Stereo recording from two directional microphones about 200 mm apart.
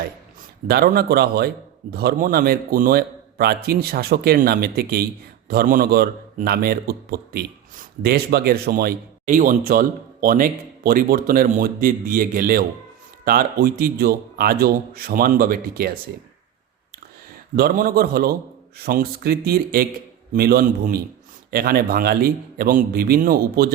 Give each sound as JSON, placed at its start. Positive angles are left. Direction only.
{"t": 0.7, "sound": "a man's voice", "side_deg": -50}
{"t": 17.6, "sound": "a man's voice", "side_deg": -45}